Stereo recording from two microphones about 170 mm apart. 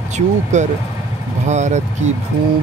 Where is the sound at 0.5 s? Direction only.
45° right (ahead or behind).